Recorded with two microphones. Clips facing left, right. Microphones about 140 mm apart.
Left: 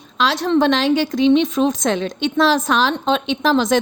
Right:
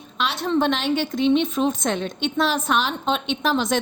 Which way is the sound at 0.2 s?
90° left.